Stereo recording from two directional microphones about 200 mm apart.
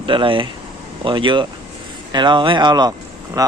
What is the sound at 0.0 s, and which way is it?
Speech, 25° right (ahead or behind).